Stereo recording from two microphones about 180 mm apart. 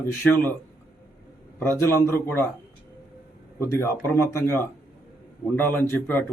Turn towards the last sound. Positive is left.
turn(degrees=10)  # may be behind; listen again after turning